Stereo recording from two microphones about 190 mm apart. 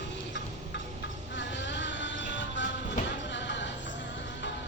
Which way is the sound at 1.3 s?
75° left (ahead or behind).